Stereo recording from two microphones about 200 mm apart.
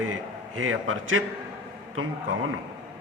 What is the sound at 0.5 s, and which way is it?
Speech, 90° right.